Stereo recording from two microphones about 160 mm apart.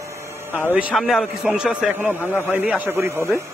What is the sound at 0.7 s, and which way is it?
A man's voice, 5° right (ahead or behind).